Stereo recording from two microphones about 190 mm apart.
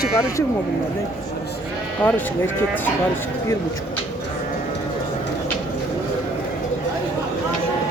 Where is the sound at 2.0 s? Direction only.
10° left (ahead or behind).